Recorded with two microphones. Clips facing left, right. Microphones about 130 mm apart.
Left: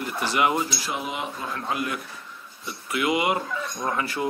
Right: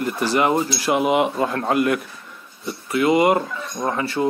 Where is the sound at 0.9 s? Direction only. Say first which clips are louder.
Right 12 dB; 70° right (ahead or behind).